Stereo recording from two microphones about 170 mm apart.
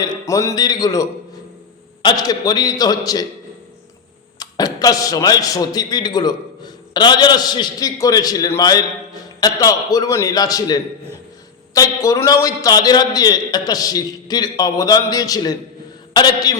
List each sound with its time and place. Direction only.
0.0 s a man's voice: 20° left (ahead or behind)
4.4 s a man's voice: 20° left (ahead or behind)